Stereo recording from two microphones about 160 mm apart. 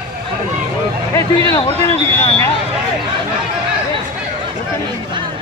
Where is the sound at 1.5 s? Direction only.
20° left (ahead or behind).